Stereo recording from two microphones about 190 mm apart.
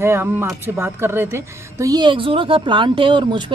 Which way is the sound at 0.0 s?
15° right (ahead or behind).